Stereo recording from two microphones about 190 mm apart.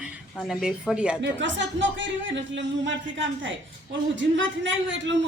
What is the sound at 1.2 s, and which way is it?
Speech, 70° right (ahead or behind).